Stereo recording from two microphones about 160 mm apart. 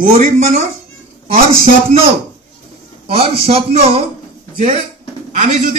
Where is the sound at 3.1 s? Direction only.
40° right (ahead or behind).